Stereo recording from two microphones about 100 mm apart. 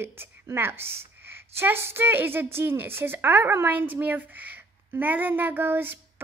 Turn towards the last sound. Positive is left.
turn(degrees=-20)  # may be behind; listen again after turning